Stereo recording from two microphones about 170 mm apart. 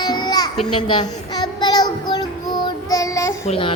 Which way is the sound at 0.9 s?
25° left (ahead or behind).